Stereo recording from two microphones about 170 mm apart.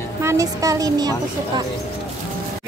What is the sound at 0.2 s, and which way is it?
Speech, 15° right (ahead or behind).